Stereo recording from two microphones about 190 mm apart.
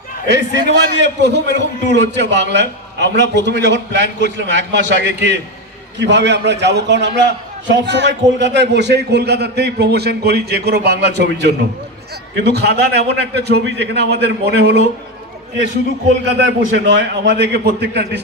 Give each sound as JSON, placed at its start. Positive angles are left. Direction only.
{"t": 0.3, "sound": "a man's voice", "side_deg": -65}
{"t": 16.7, "sound": "a man's voice", "side_deg": -70}